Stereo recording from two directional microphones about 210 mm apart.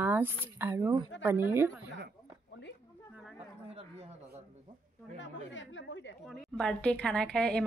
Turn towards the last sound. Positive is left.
turn(degrees=5)  # may be behind; listen again after turning